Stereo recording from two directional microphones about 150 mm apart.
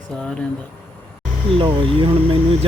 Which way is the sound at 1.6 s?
35° right (ahead or behind).